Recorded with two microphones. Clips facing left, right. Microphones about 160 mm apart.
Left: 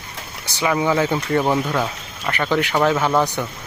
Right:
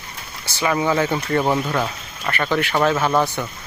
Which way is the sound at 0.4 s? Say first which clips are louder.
Left 1 dB; 15° left (ahead or behind).